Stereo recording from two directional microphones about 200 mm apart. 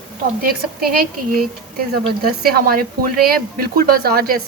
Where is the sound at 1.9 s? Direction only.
50° right (ahead or behind).